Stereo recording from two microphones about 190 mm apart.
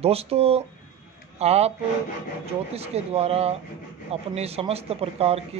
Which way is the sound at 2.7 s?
30° right (ahead or behind).